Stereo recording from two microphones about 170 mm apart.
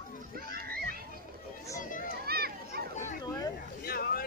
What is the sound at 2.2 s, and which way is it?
Children playing, 65° right (ahead or behind).